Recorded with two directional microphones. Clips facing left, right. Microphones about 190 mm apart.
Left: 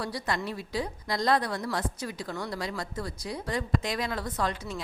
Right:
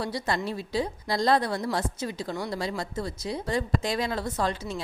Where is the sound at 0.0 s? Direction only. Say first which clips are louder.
Right 3 dB; 25° right (ahead or behind).